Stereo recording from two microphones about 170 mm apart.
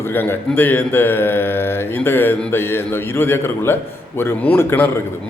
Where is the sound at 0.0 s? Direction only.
15° left (ahead or behind).